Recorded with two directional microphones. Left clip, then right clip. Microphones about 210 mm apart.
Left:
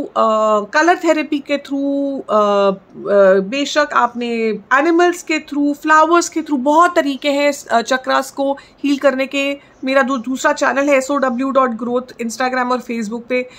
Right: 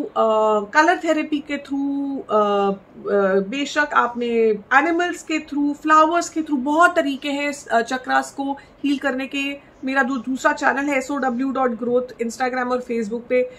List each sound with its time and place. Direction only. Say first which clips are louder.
0.1 s speech: left 4 dB; 50° left (ahead or behind)